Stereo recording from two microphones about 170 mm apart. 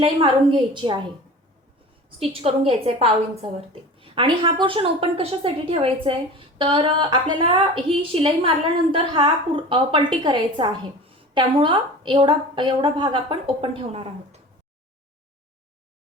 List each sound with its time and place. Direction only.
0.0 s a woman's voice: 30° right (ahead or behind)
2.0 s a woman's voice: 35° right (ahead or behind)